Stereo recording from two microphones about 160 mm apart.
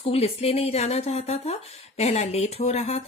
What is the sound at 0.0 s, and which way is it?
Speech, 40° left (ahead or behind).